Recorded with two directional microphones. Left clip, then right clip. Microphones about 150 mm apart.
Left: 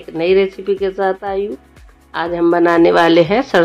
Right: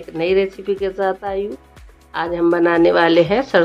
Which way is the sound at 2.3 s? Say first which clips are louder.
Left 3 dB; 40° left (ahead or behind).